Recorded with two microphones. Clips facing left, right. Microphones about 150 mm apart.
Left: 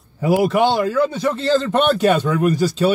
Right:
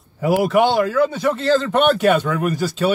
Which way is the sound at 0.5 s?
5° right (ahead or behind).